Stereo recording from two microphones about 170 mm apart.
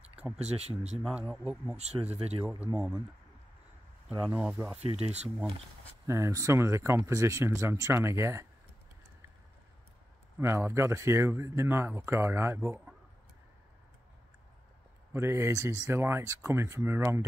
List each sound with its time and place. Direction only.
0.6 s speech: 40° right (ahead or behind)
1.3 s speech: 5° right (ahead or behind)
1.8 s speech: 40° right (ahead or behind)
2.6 s speech: 5° right (ahead or behind)
4.3 s speech: 5° right (ahead or behind)
4.9 s speech: 40° right (ahead or behind)
6.0 s speech: 15° right (ahead or behind)
10.4 s speech: 15° right (ahead or behind)
15.1 s speech: 15° right (ahead or behind)